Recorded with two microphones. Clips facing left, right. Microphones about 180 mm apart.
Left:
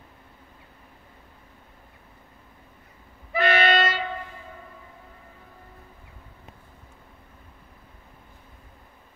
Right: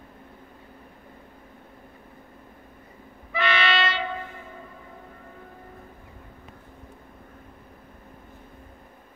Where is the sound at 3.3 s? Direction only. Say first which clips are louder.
Left 4 dB; 45° left (ahead or behind).